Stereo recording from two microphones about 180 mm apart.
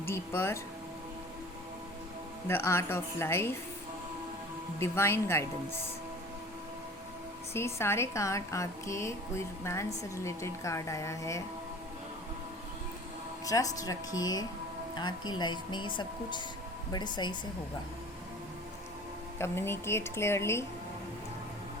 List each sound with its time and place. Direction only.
0.0 s a woman's voice: 15° left (ahead or behind)
2.5 s a woman's voice: 15° left (ahead or behind)
4.8 s a woman's voice: 15° left (ahead or behind)
7.5 s a woman's voice: 15° left (ahead or behind)
13.4 s speech: 20° left (ahead or behind)
19.4 s a woman's voice: 15° left (ahead or behind)